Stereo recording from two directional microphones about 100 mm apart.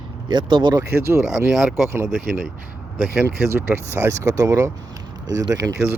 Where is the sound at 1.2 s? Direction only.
Centre (ahead or behind).